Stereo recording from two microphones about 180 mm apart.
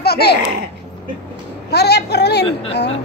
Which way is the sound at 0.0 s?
65° left (ahead or behind).